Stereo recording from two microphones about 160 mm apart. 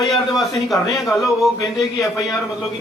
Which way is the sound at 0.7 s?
20° left (ahead or behind).